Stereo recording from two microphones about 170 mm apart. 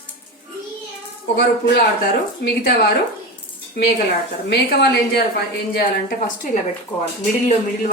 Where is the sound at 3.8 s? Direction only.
70° left (ahead or behind).